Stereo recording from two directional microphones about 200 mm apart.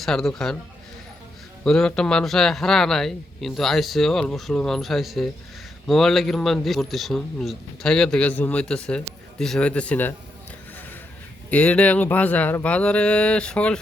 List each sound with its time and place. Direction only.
0.0 s speech: centre (ahead or behind)
1.6 s speech: centre (ahead or behind)
11.5 s speech: 5° left (ahead or behind)